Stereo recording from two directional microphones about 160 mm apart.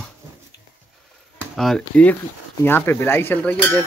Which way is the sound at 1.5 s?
5° left (ahead or behind).